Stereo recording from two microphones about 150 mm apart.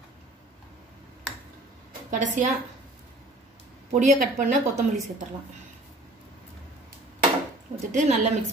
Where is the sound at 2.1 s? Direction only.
55° right (ahead or behind).